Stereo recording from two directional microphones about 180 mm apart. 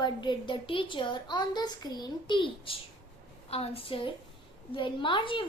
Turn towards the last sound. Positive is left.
turn(degrees=30)  # may be behind; listen again after turning